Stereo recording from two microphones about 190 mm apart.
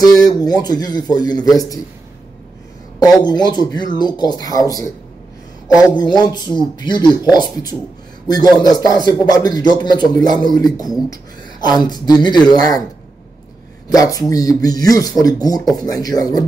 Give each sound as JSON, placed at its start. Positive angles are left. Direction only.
{"t": 0.0, "sound": "speech", "side_deg": 20}
{"t": 3.0, "sound": "speech", "side_deg": 20}
{"t": 13.8, "sound": "speech", "side_deg": 20}